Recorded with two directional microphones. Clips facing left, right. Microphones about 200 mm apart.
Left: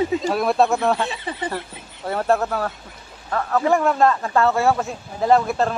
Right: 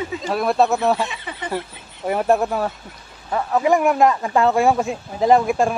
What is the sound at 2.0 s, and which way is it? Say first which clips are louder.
Speech: right 2 dB; 15° right (ahead or behind).